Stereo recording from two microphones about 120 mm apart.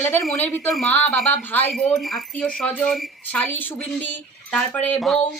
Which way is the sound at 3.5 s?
15° left (ahead or behind).